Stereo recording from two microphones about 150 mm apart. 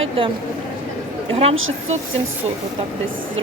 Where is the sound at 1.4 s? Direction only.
45° right (ahead or behind).